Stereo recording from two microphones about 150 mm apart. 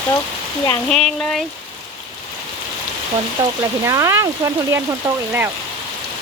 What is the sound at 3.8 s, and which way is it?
Speech, 20° right (ahead or behind).